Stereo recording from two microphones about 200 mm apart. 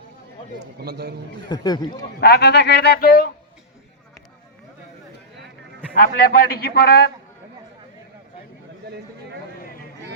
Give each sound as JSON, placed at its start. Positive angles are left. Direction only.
{"t": 0.8, "sound": "a man's voice", "side_deg": -50}
{"t": 1.5, "sound": "speech", "side_deg": 20}
{"t": 2.2, "sound": "a man's voice", "side_deg": 55}
{"t": 5.9, "sound": "a man's voice", "side_deg": 45}